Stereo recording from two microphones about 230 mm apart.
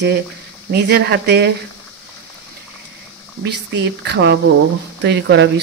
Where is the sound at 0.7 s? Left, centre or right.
Right.